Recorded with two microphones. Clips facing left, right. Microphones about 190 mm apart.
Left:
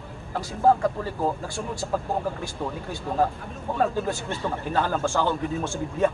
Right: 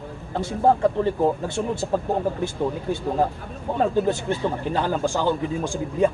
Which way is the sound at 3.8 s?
20° right (ahead or behind).